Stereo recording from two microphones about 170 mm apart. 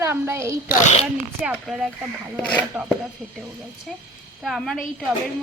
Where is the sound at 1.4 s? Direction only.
5° right (ahead or behind).